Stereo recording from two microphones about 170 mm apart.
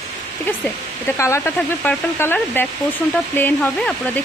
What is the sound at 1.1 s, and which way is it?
Speech, 15° left (ahead or behind).